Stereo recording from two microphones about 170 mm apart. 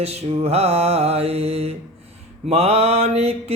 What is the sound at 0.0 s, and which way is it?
Mantra, 40° right (ahead or behind).